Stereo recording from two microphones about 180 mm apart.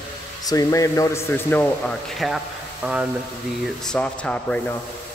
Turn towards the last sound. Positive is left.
turn(degrees=5)  # may be behind; listen again after turning